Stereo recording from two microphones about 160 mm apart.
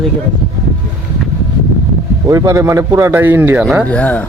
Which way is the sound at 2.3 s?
20° right (ahead or behind).